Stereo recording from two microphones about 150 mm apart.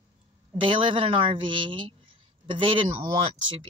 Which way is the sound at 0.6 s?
35° right (ahead or behind).